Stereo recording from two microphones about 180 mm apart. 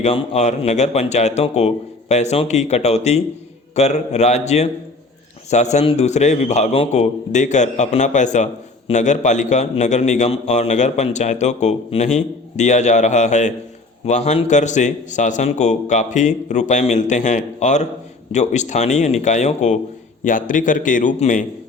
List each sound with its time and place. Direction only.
0.0 s a man's voice: 35° left (ahead or behind)